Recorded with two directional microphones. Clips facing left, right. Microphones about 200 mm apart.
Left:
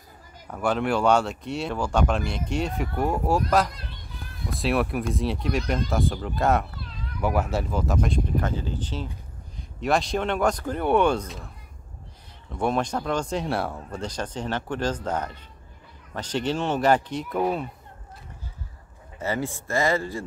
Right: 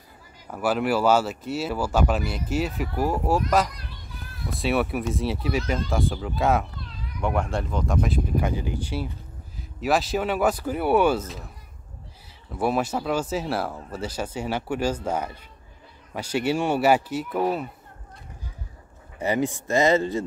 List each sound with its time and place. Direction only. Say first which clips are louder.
0.5 s speech: right 1 dB; 5° right (ahead or behind)
12.5 s speech: right 1 dB; 5° right (ahead or behind)
19.1 s a man's voice: right 4 dB; 15° right (ahead or behind)